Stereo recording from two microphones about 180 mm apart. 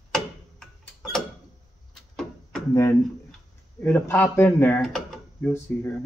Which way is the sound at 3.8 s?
10° left (ahead or behind).